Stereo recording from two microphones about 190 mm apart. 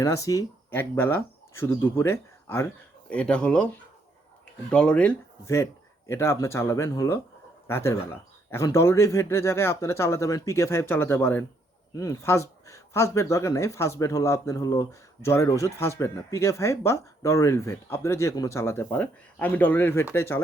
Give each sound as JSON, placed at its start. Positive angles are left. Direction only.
{"t": 0.0, "sound": "speech", "side_deg": 15}